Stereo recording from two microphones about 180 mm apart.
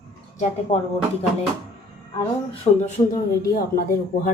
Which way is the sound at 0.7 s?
40° left (ahead or behind).